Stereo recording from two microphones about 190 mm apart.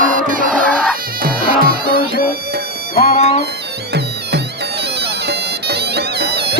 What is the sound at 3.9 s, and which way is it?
Music, 60° right (ahead or behind).